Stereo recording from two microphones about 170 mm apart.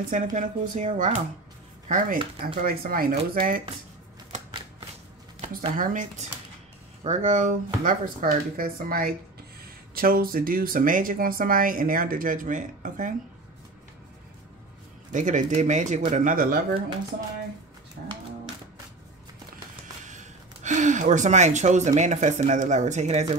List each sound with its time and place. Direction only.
0.1 s speech: 50° right (ahead or behind)
1.9 s speech: 55° right (ahead or behind)
4.5 s shuffling cards: 30° right (ahead or behind)
5.8 s speech: 50° right (ahead or behind)
15.1 s speech: 45° right (ahead or behind)
18.0 s a sound: 60° right (ahead or behind)
20.6 s speech: 45° right (ahead or behind)